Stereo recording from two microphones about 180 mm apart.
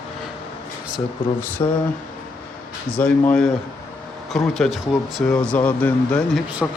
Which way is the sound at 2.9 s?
5° left (ahead or behind).